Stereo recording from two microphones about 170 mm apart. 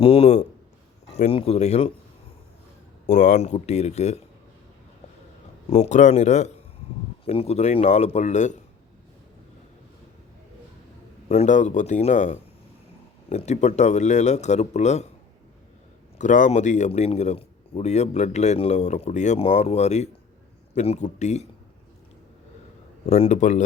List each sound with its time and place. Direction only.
0.0 s speech: 35° left (ahead or behind)
3.1 s speech: 45° left (ahead or behind)
5.7 s speech: 40° left (ahead or behind)
11.3 s speech: 45° left (ahead or behind)
16.1 s speech: 45° left (ahead or behind)
23.0 s speech: 35° left (ahead or behind)